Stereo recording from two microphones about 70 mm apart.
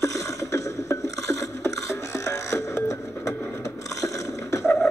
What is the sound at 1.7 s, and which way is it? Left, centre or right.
Music, left.